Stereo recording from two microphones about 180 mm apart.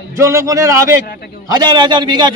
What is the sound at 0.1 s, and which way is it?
A man's voice, 15° right (ahead or behind).